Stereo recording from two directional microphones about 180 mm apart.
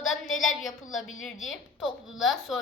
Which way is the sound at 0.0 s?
90° left.